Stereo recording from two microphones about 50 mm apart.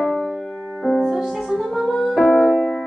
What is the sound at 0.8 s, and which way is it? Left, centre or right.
Music, centre.